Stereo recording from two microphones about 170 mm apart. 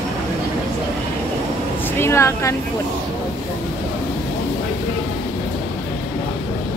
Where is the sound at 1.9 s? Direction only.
15° left (ahead or behind).